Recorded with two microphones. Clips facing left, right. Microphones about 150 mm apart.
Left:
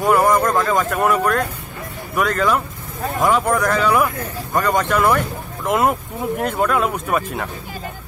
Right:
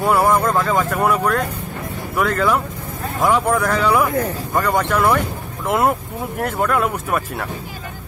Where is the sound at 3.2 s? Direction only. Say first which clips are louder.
Even; 10° right (ahead or behind).